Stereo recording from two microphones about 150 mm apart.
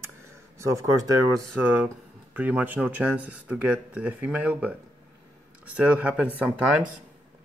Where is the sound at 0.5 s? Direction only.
20° right (ahead or behind).